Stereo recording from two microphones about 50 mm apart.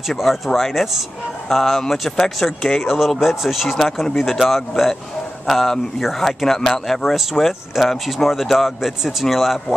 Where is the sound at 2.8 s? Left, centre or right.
Centre.